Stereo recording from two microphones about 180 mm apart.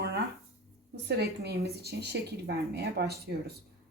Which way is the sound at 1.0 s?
65° right (ahead or behind).